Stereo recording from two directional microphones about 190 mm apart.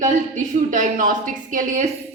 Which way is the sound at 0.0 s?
40° right (ahead or behind).